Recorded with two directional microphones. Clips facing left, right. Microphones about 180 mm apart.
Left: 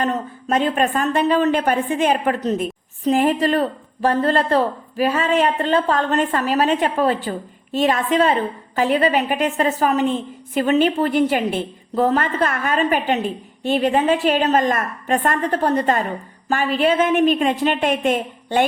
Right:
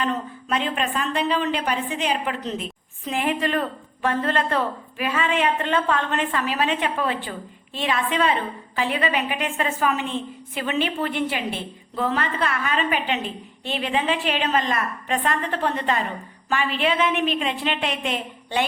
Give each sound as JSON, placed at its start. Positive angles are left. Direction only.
{"t": 0.0, "sound": "a woman's voice", "side_deg": 45}